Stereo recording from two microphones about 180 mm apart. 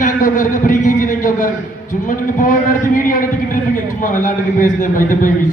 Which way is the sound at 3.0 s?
50° left (ahead or behind).